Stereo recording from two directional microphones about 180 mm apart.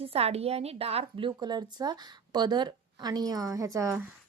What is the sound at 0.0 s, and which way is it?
A woman's voice, 35° right (ahead or behind).